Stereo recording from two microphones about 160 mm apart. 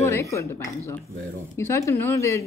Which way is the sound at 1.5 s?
15° left (ahead or behind).